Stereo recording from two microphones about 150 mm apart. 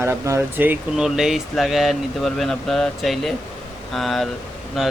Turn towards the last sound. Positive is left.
turn(degrees=0)  # may be behind; listen again after turning